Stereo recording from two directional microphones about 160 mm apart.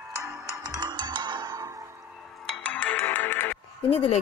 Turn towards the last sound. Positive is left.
turn(degrees=10)  # may be behind; listen again after turning